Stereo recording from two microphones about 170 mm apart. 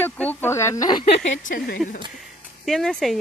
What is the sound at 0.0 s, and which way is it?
Speech, 10° left (ahead or behind).